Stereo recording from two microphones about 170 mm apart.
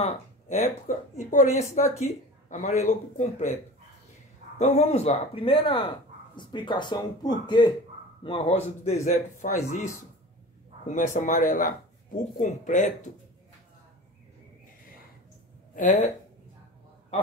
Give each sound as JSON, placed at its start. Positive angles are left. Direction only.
{"t": 0.0, "sound": "a woman's voice", "side_deg": 45}
{"t": 4.6, "sound": "speech", "side_deg": 40}
{"t": 9.0, "sound": "a woman's voice", "side_deg": 50}
{"t": 10.9, "sound": "a woman's voice", "side_deg": 45}
{"t": 15.7, "sound": "speech", "side_deg": 45}